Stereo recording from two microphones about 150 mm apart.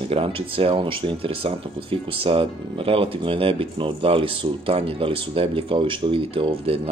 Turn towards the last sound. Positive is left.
turn(degrees=-40)  # may be behind; listen again after turning